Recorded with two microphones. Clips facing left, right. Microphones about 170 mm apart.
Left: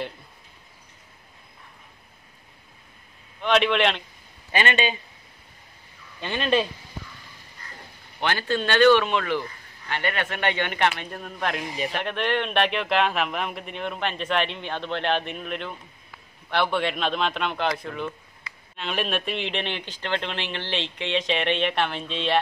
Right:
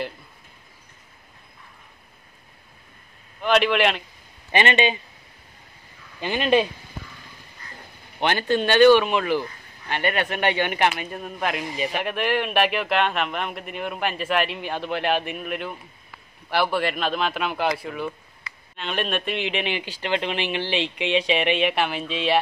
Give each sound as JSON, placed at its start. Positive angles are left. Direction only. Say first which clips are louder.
{"t": 3.3, "sound": "a man's voice", "louder": "right 1 dB", "side_deg": -5}
{"t": 4.5, "sound": "a man's voice", "louder": "right 3 dB", "side_deg": -20}
{"t": 6.2, "sound": "speech", "louder": "right 3 dB", "side_deg": -15}
{"t": 8.2, "sound": "a man's voice", "louder": "right 4 dB", "side_deg": -20}